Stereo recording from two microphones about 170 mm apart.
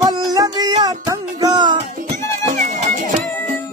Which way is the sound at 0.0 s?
25° right (ahead or behind).